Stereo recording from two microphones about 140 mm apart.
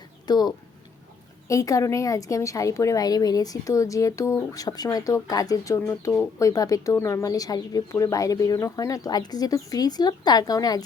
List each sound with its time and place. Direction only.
0.3 s speech: 30° left (ahead or behind)